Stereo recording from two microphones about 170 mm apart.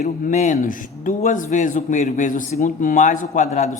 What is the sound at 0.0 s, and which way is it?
Speech, 45° left (ahead or behind).